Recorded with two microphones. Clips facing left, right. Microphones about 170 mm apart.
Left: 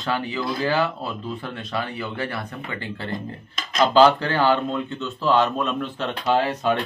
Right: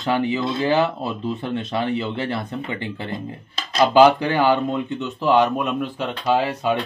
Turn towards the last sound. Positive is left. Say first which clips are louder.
# right 1 dB
turn(degrees=-10)  # may be behind; listen again after turning